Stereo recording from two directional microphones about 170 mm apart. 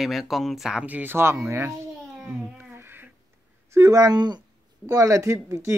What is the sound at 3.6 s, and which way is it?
A woman's voice, 15° right (ahead or behind).